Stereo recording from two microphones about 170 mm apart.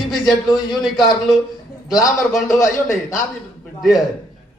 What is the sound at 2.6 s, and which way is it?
Speech, 20° left (ahead or behind).